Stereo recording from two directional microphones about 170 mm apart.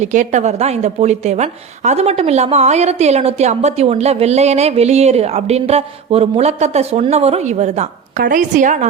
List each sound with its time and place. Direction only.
0.0 s a woman's voice: 45° right (ahead or behind)